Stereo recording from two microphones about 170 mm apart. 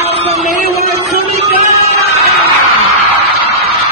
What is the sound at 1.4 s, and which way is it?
Crowd, 40° right (ahead or behind).